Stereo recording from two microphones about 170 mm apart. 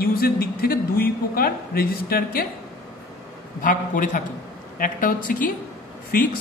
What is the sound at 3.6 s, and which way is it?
Speech, 50° left (ahead or behind).